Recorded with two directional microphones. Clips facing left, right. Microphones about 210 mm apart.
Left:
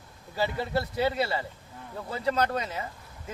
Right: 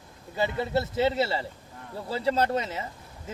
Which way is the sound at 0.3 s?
20° right (ahead or behind).